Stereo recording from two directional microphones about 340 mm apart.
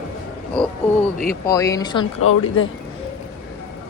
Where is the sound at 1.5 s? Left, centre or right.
Centre.